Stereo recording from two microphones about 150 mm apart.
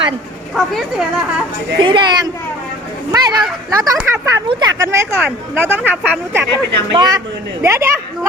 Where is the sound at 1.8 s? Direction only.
35° right (ahead or behind).